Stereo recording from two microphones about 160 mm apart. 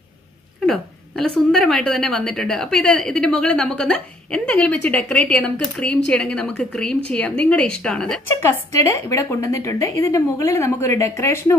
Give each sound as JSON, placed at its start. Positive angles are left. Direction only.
{"t": 0.7, "sound": "a woman's voice", "side_deg": 5}
{"t": 8.3, "sound": "a woman's voice", "side_deg": 15}